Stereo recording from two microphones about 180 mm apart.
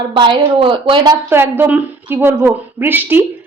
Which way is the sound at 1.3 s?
10° right (ahead or behind).